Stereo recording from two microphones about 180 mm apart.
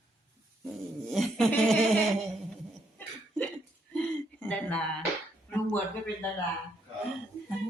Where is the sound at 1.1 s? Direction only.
Centre (ahead or behind).